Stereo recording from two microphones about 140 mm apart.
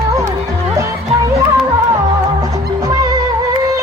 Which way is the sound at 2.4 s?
25° right (ahead or behind).